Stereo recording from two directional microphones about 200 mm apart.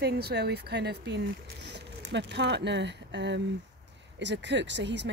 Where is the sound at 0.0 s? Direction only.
55° right (ahead or behind).